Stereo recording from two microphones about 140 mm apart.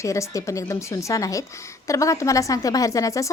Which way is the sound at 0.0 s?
20° left (ahead or behind).